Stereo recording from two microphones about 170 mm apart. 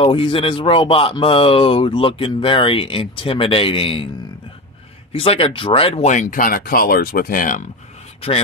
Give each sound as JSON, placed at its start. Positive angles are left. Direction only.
{"t": 0.0, "sound": "speech", "side_deg": 30}
{"t": 5.1, "sound": "speech", "side_deg": 35}